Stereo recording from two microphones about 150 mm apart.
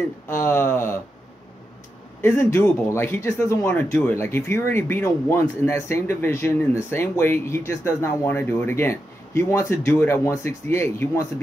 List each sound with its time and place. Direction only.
0.3 s speech: 15° left (ahead or behind)
2.2 s speech: 20° left (ahead or behind)